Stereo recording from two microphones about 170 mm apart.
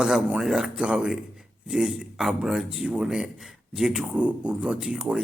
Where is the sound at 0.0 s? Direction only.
5° right (ahead or behind).